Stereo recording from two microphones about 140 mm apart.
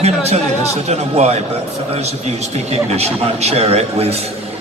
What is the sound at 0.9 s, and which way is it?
A man's voice, 50° right (ahead or behind).